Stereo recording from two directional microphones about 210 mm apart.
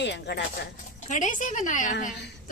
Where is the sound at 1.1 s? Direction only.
35° left (ahead or behind).